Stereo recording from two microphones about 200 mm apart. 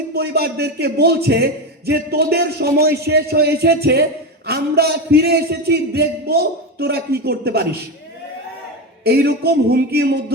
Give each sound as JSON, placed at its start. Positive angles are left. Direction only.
{"t": 0.1, "sound": "a man's voice", "side_deg": -50}
{"t": 9.0, "sound": "a man's voice", "side_deg": -50}